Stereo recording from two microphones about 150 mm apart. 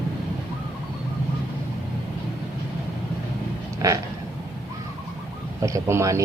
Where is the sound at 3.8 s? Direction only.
20° right (ahead or behind).